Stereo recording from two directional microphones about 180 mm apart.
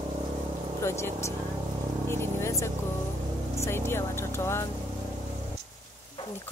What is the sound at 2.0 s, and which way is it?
Vehicle, 15° left (ahead or behind).